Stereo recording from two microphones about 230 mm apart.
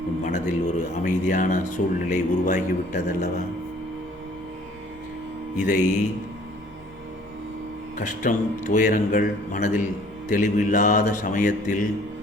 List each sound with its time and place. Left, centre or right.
0.3 s a man's voice: left
5.6 s a man's voice: left
7.9 s a man's voice: left